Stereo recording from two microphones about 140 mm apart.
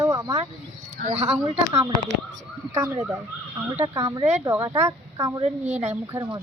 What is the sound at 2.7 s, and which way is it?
Speech, 20° right (ahead or behind).